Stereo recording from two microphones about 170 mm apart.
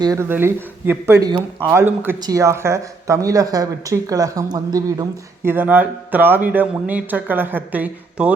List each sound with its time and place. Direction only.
0.0 s speech: 15° right (ahead or behind)